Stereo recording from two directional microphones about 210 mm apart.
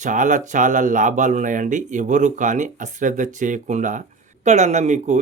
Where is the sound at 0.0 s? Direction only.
35° right (ahead or behind).